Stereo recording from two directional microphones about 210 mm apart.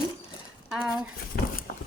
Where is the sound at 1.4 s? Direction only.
40° left (ahead or behind).